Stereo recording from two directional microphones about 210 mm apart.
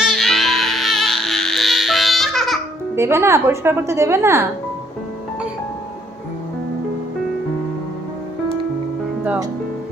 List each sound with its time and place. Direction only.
0.0 s music: centre (ahead or behind)
2.9 s speech: 10° right (ahead or behind)
9.2 s speech: 5° right (ahead or behind)